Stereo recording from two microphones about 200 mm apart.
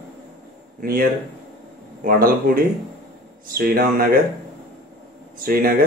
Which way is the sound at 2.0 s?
45° right (ahead or behind).